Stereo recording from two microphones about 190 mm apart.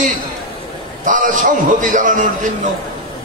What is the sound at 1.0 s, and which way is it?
A man's voice, 40° right (ahead or behind).